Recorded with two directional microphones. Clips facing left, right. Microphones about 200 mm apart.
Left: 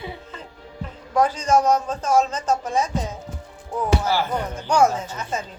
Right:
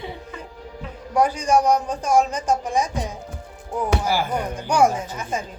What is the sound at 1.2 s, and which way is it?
A man's voice, 15° right (ahead or behind).